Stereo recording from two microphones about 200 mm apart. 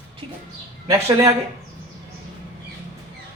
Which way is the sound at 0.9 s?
15° right (ahead or behind).